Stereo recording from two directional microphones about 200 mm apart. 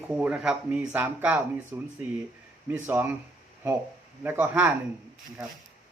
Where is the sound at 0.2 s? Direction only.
5° right (ahead or behind).